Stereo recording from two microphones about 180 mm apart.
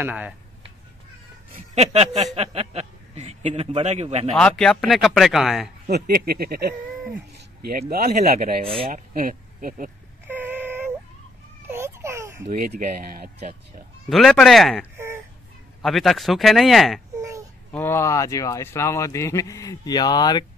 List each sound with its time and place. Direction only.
0.0 s speech: 10° right (ahead or behind)
1.9 s speech: 35° right (ahead or behind)
4.4 s speech: 5° left (ahead or behind)
5.9 s speech: 60° right (ahead or behind)
7.9 s speech: 55° right (ahead or behind)
10.2 s a sound: 10° right (ahead or behind)
11.7 s baby cry: 15° right (ahead or behind)
12.5 s speech: 55° right (ahead or behind)
14.0 s speech: centre (ahead or behind)
15.0 s a sound: 15° right (ahead or behind)
15.8 s speech: centre (ahead or behind)
17.1 s babbling: 20° right (ahead or behind)
17.7 s speech: 15° left (ahead or behind)